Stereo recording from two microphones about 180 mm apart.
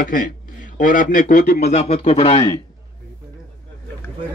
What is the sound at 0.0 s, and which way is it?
A man's voice, 50° left (ahead or behind).